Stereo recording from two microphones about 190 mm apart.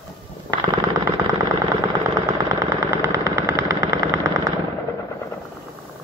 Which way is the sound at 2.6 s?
15° right (ahead or behind).